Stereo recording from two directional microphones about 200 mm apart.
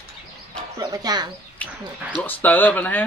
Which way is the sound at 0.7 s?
20° right (ahead or behind).